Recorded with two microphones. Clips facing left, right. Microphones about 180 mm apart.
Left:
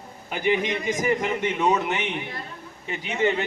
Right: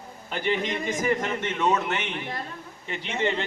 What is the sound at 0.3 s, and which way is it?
A man's voice, 10° left (ahead or behind).